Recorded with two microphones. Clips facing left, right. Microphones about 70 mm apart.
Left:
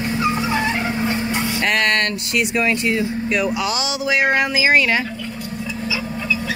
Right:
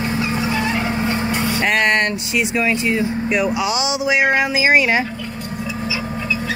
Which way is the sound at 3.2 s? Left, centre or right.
Centre.